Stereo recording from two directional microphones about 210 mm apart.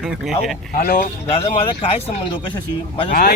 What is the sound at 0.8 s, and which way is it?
Speech, 45° left (ahead or behind).